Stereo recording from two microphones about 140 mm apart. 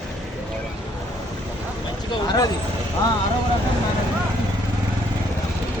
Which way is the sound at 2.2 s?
25° left (ahead or behind).